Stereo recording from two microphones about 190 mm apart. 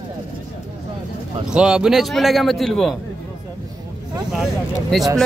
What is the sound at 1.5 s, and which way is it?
Speech, 5° right (ahead or behind).